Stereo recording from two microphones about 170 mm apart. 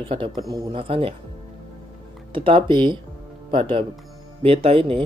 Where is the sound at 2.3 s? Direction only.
30° right (ahead or behind).